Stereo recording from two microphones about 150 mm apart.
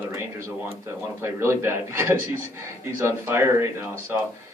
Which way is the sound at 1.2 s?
15° right (ahead or behind).